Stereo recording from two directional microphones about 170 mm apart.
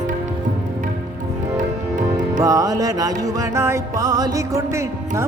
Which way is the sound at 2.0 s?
20° right (ahead or behind).